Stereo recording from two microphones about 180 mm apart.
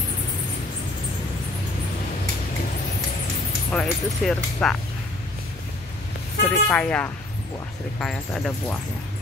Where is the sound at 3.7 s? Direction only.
5° left (ahead or behind).